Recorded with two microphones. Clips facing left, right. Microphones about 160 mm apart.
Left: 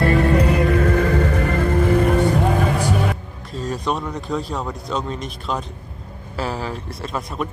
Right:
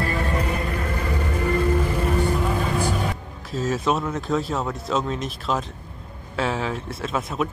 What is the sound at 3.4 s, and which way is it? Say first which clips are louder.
Speech: right 1 dB; centre (ahead or behind).